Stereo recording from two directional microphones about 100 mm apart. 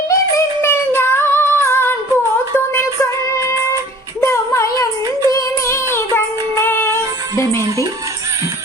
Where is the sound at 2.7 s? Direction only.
30° left (ahead or behind).